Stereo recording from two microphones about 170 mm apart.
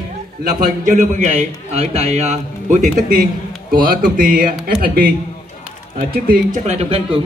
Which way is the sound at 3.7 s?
55° right (ahead or behind).